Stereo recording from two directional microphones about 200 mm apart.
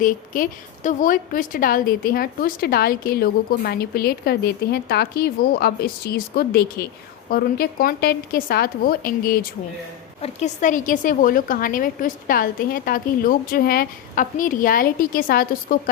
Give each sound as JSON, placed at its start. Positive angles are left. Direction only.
{"t": 0.0, "sound": "a woman's voice", "side_deg": 40}
{"t": 10.2, "sound": "a woman's voice", "side_deg": 35}